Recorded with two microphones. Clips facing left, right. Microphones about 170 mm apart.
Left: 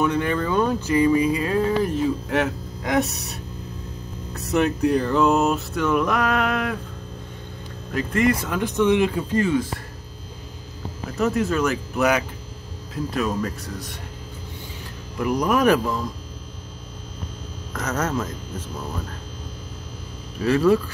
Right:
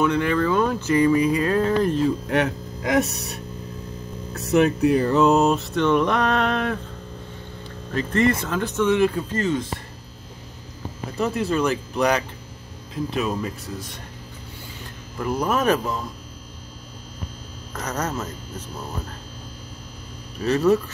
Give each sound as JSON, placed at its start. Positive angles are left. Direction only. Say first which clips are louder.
{"t": 0.0, "sound": "speech", "louder": "right 2 dB", "side_deg": 20}
{"t": 1.4, "sound": "speech", "louder": "right 1 dB", "side_deg": 15}
{"t": 4.4, "sound": "a sound", "louder": "right 2 dB", "side_deg": 0}
{"t": 6.2, "sound": "speech", "louder": "right 1 dB", "side_deg": 10}
{"t": 7.9, "sound": "speech", "louder": "even", "side_deg": 10}
{"t": 11.1, "sound": "a sound", "louder": "left 1 dB", "side_deg": 0}
{"t": 15.6, "sound": "speech", "louder": "left 3 dB", "side_deg": -20}
{"t": 17.7, "sound": "speech", "louder": "left 3 dB", "side_deg": -10}
{"t": 20.5, "sound": "speech", "louder": "left 1 dB", "side_deg": -20}